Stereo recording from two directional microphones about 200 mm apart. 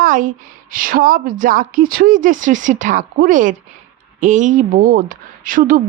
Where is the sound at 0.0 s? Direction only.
40° right (ahead or behind).